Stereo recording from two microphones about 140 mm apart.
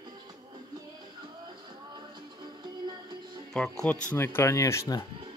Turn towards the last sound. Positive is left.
turn(degrees=20)  # may be behind; listen again after turning